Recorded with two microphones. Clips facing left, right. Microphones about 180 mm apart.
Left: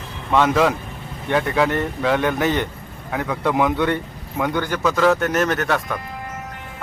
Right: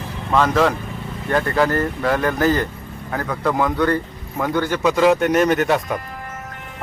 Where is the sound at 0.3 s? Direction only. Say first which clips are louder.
Even; centre (ahead or behind).